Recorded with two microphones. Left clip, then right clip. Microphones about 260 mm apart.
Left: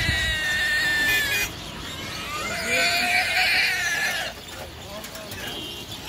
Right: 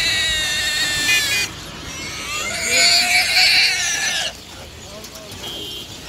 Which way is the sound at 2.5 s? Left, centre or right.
Centre.